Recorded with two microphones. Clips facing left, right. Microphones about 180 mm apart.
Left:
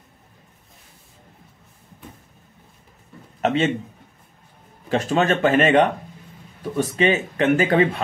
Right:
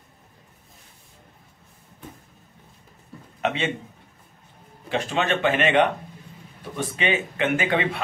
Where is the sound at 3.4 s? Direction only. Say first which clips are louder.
Left 5 dB; 40° left (ahead or behind).